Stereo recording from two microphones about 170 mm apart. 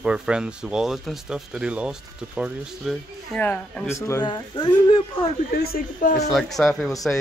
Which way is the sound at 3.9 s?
20° left (ahead or behind).